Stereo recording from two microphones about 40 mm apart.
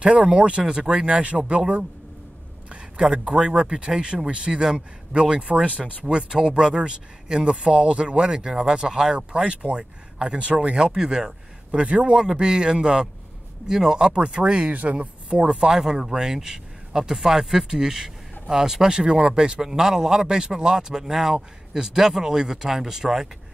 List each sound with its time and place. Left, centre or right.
0.0 s speech: right
11.8 s speech: right
12.2 s speech: centre
14.1 s speech: right
15.8 s speech: centre